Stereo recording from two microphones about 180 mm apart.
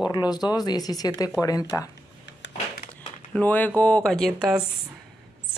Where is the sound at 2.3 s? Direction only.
75° left (ahead or behind).